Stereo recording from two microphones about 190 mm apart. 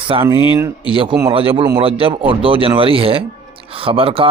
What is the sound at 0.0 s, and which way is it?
A man's voice, 25° right (ahead or behind).